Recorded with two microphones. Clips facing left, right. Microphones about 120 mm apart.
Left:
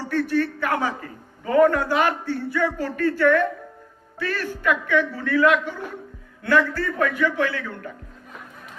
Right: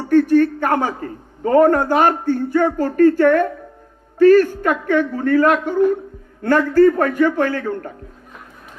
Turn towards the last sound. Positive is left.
turn(degrees=-45)  # may be behind; listen again after turning